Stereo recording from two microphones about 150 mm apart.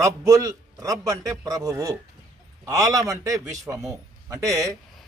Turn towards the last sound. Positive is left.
turn(degrees=-20)  # may be behind; listen again after turning